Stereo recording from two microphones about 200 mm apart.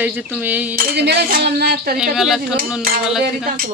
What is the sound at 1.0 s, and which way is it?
Speech, 55° right (ahead or behind).